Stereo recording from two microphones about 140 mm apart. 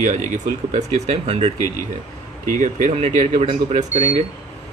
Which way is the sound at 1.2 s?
45° right (ahead or behind).